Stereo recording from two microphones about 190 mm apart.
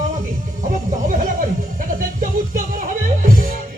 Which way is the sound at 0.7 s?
45° right (ahead or behind).